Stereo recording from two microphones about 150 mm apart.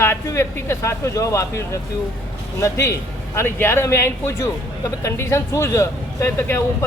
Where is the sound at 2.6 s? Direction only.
20° left (ahead or behind).